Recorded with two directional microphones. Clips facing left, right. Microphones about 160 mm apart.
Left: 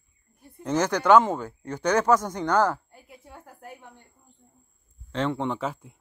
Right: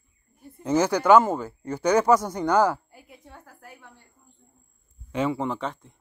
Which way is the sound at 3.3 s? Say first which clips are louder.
Left 5 dB; 20° left (ahead or behind).